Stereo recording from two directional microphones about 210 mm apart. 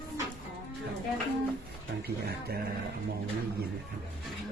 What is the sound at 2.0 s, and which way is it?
Speech, 45° right (ahead or behind).